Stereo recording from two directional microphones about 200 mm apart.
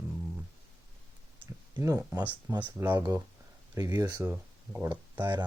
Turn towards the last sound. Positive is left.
turn(degrees=-15)  # may be behind; listen again after turning